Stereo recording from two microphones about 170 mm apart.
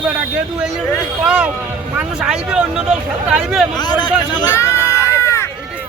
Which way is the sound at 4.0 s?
25° left (ahead or behind).